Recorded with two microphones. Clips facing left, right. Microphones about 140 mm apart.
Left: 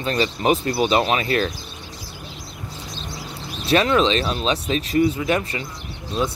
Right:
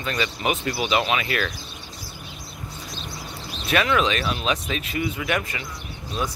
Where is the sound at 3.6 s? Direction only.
30° left (ahead or behind).